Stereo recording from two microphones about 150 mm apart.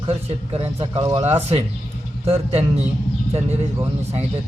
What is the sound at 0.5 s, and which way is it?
Speech, 40° right (ahead or behind).